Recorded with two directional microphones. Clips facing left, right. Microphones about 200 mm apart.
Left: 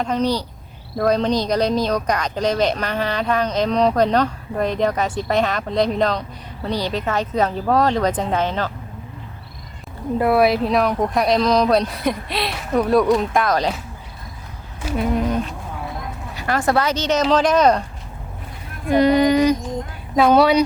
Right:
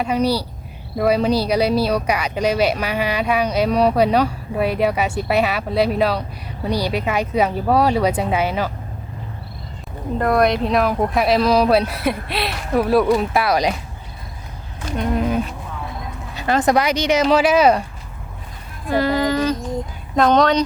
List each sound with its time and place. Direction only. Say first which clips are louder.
0.0 s speech: right 1 dB; 10° right (ahead or behind)
10.2 s speech: left 1 dB; 5° left (ahead or behind); by 13.7 s 10° right (ahead or behind)
14.8 s a sound: left 1 dB; 5° left (ahead or behind)
16.3 s speech: right 3 dB; 20° right (ahead or behind)
18.9 s a sound: left 4 dB; 20° left (ahead or behind)
20.1 s speech: left 1 dB; 10° left (ahead or behind)